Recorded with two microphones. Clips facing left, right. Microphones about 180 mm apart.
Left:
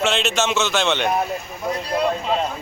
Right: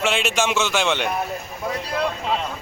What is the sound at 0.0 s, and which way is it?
Speech, 10° right (ahead or behind).